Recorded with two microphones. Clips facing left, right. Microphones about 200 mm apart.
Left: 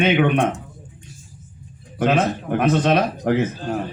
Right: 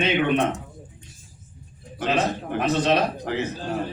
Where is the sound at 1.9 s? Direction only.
55° left (ahead or behind).